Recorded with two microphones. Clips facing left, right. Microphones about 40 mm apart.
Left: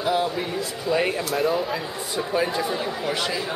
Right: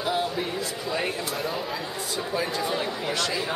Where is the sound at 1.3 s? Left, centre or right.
Centre.